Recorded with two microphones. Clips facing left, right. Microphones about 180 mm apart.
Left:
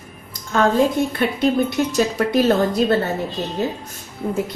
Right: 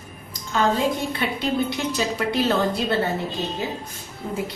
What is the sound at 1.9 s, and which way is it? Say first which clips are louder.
Speech: left 7 dB; 45° left (ahead or behind).